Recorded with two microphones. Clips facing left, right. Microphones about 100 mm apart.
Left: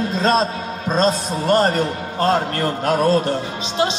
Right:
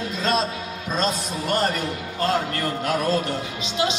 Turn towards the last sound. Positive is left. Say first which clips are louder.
# left 4 dB
turn(degrees=30)  # may be behind; listen again after turning